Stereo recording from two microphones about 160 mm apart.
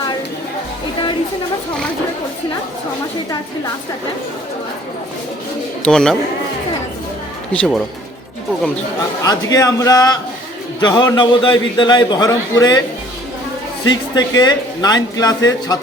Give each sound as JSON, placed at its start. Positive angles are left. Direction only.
{"t": 5.8, "sound": "speech", "side_deg": 5}
{"t": 7.5, "sound": "speech", "side_deg": 5}
{"t": 9.2, "sound": "a man's voice", "side_deg": 25}
{"t": 13.9, "sound": "a man's voice", "side_deg": 25}